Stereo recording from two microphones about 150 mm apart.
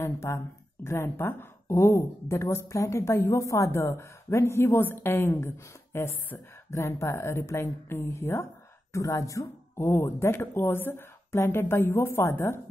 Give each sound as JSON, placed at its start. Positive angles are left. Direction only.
{"t": 0.0, "sound": "a woman's voice", "side_deg": 20}